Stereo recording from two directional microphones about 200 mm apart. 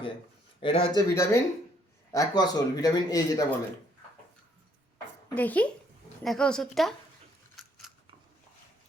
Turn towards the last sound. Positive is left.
turn(degrees=0)  # may be behind; listen again after turning